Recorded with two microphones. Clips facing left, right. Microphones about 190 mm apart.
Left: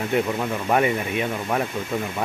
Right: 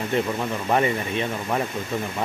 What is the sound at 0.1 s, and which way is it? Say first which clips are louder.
Speech: left 1 dB; 5° left (ahead or behind).